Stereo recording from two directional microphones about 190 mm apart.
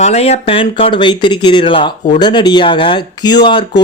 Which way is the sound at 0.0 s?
35° left (ahead or behind).